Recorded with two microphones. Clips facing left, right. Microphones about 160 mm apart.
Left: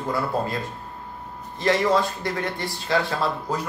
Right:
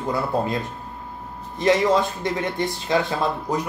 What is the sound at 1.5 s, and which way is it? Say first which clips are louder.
Speech: right 2 dB; 20° right (ahead or behind).